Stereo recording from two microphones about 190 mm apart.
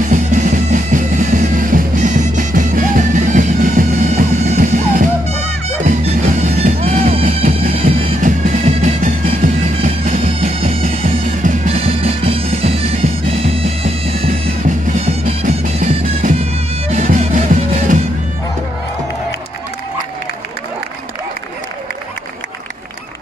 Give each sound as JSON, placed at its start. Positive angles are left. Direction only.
{"t": 0.1, "sound": "music", "side_deg": -40}
{"t": 6.6, "sound": "music", "side_deg": -35}
{"t": 11.4, "sound": "bagpipes", "side_deg": -30}
{"t": 15.2, "sound": "music", "side_deg": -45}